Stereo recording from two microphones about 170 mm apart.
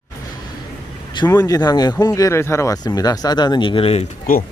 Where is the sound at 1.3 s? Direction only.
20° left (ahead or behind).